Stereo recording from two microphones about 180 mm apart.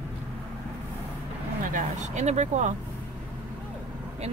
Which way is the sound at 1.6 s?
45° right (ahead or behind).